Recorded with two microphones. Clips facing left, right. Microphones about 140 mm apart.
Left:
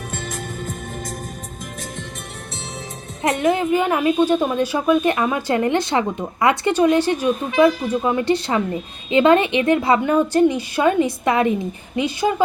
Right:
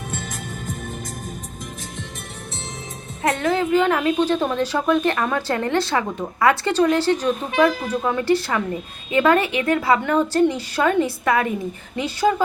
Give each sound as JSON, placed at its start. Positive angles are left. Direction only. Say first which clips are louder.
{"t": 3.2, "sound": "a woman's voice", "louder": "left 2 dB", "side_deg": 15}